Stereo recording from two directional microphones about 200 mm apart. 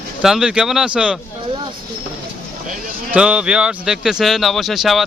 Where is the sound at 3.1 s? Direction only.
5° right (ahead or behind).